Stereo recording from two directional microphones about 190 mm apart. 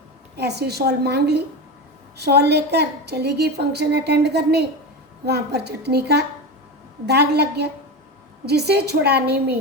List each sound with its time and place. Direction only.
0.3 s a woman's voice: 60° right (ahead or behind)